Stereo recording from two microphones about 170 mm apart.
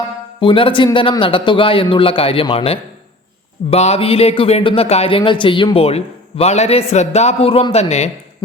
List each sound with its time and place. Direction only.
0.3 s a man's voice: 30° left (ahead or behind)